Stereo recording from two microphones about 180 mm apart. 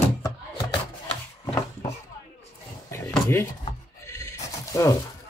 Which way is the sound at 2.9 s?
15° left (ahead or behind).